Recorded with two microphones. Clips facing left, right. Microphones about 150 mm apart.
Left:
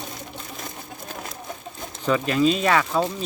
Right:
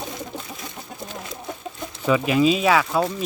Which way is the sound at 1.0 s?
55° left (ahead or behind).